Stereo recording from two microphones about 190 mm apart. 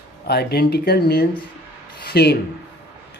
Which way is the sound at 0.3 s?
55° left (ahead or behind).